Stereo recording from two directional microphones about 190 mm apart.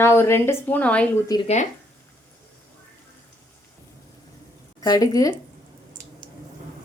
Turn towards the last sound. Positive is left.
turn(degrees=20)  # may be behind; listen again after turning